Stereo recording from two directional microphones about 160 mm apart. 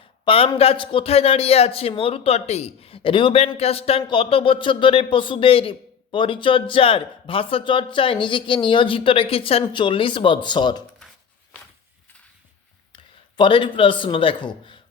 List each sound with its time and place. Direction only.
0.3 s speech: 35° left (ahead or behind)
12.9 s a man's voice: 30° left (ahead or behind)